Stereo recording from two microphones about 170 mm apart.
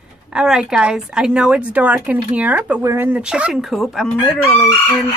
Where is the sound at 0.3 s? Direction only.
5° right (ahead or behind).